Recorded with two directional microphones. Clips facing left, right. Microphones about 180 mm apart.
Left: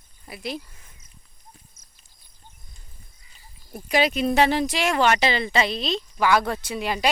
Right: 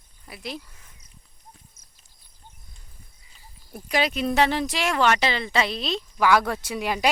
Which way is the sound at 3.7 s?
Centre (ahead or behind).